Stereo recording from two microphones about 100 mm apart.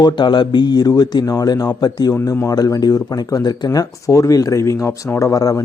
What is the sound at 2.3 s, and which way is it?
Speech, 30° left (ahead or behind).